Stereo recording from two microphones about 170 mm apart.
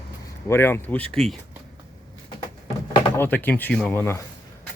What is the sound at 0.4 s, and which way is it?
Speech, 15° left (ahead or behind).